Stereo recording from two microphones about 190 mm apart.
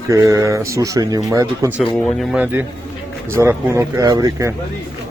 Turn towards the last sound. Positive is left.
turn(degrees=-20)  # may be behind; listen again after turning